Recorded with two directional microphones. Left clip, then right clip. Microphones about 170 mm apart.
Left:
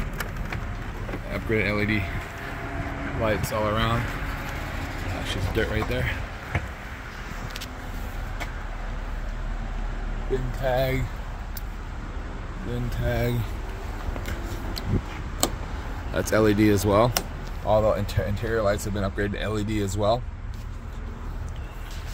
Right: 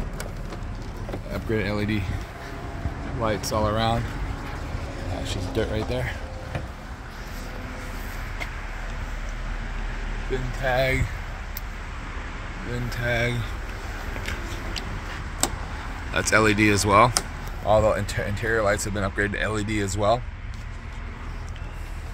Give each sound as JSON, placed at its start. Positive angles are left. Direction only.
{"t": 1.3, "sound": "speech", "side_deg": -10}
{"t": 3.5, "sound": "speech", "side_deg": -15}
{"t": 5.3, "sound": "speech", "side_deg": -10}
{"t": 10.6, "sound": "speech", "side_deg": 10}
{"t": 13.1, "sound": "speech", "side_deg": 35}
{"t": 16.1, "sound": "speech", "side_deg": 15}
{"t": 17.6, "sound": "speech", "side_deg": -5}